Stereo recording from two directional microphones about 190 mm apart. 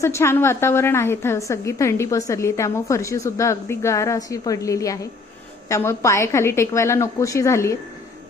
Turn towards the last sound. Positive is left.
turn(degrees=15)  # may be behind; listen again after turning